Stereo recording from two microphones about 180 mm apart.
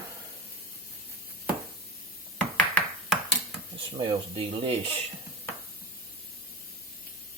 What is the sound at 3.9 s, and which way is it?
Speech, 30° right (ahead or behind).